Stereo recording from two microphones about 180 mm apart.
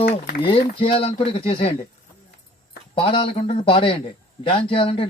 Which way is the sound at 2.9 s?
30° left (ahead or behind).